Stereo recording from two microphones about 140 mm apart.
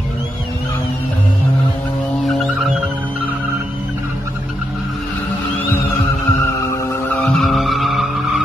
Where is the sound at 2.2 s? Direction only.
Centre (ahead or behind).